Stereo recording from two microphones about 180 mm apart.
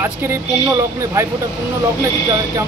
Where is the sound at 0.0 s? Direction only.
15° right (ahead or behind).